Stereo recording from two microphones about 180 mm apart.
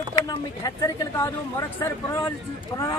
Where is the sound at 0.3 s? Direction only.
20° left (ahead or behind).